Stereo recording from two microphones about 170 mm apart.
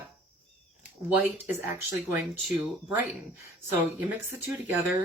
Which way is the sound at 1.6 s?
10° right (ahead or behind).